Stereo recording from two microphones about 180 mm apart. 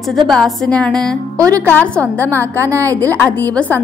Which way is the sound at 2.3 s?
15° right (ahead or behind).